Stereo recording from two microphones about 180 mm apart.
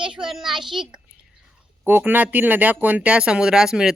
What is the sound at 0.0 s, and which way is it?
Speech, 5° right (ahead or behind).